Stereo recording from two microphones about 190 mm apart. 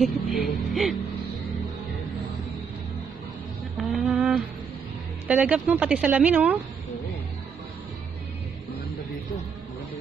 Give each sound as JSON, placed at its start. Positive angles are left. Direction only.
{"t": 0.0, "sound": "speech", "side_deg": 0}
{"t": 3.7, "sound": "a sound", "side_deg": -5}
{"t": 5.3, "sound": "speech", "side_deg": -10}